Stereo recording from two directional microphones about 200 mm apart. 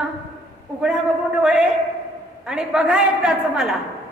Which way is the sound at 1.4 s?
5° right (ahead or behind).